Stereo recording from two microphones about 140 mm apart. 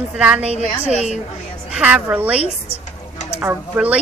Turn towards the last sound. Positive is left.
turn(degrees=-10)  # may be behind; listen again after turning